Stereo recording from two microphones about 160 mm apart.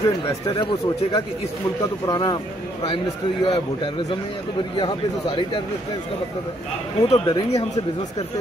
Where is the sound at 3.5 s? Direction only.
30° left (ahead or behind).